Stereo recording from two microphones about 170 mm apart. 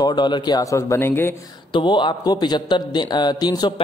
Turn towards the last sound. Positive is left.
turn(degrees=25)  # may be behind; listen again after turning